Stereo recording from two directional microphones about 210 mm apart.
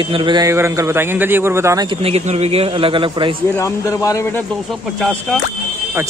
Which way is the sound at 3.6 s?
15° left (ahead or behind).